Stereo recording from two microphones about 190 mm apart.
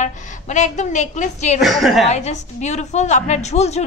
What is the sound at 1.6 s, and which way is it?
Speech, centre (ahead or behind).